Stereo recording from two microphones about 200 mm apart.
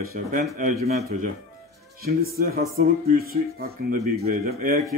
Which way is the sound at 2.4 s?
50° right (ahead or behind).